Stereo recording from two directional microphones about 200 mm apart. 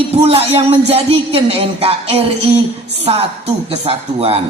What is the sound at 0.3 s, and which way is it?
A man's voice, 30° right (ahead or behind).